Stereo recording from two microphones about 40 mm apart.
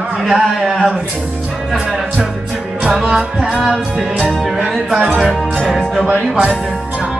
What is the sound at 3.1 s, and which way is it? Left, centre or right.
Music, centre.